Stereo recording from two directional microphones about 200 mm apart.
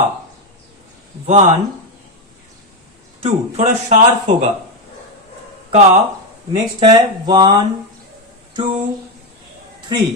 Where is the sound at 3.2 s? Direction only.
35° right (ahead or behind).